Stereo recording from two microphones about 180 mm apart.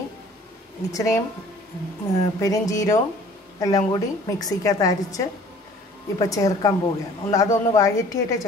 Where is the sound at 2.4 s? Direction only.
20° left (ahead or behind).